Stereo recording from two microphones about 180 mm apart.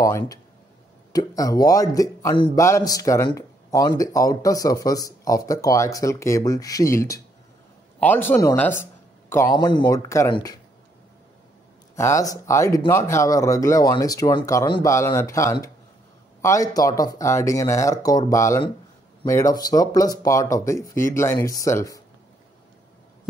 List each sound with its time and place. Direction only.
0.0 s a man's voice: 20° left (ahead or behind)
11.9 s speech: 15° left (ahead or behind)